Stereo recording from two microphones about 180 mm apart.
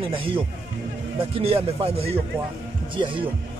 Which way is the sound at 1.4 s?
30° right (ahead or behind).